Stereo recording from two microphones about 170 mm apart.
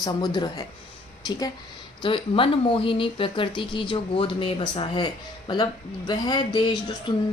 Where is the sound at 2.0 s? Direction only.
30° left (ahead or behind).